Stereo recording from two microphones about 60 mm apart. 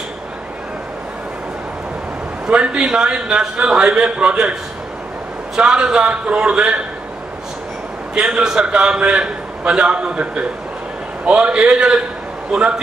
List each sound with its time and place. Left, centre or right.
2.5 s a man's voice: centre
5.6 s a man's voice: centre
8.1 s a man's voice: centre